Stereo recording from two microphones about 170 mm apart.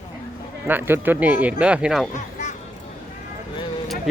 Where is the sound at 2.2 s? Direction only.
45° left (ahead or behind).